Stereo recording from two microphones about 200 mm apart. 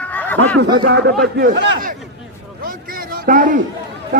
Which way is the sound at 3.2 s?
40° right (ahead or behind).